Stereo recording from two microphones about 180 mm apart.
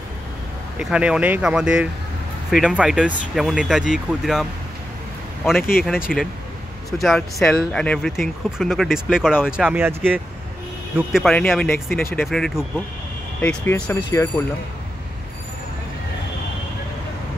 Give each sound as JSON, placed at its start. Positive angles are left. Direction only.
{"t": 0.7, "sound": "speech", "side_deg": -5}
{"t": 5.6, "sound": "speech", "side_deg": 55}
{"t": 5.9, "sound": "speech", "side_deg": -5}